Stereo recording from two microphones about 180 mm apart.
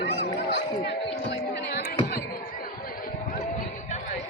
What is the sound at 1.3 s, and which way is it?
Music, 60° left (ahead or behind).